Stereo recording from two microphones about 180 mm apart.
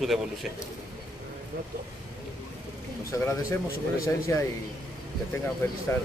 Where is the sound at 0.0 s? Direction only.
Centre (ahead or behind).